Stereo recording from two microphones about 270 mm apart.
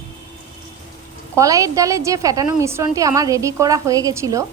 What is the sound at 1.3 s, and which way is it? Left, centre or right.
A woman's voice, centre.